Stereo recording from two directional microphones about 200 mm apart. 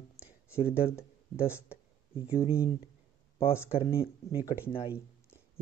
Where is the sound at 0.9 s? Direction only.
10° left (ahead or behind).